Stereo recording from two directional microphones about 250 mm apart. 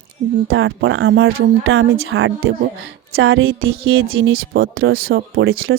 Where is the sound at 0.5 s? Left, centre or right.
Right.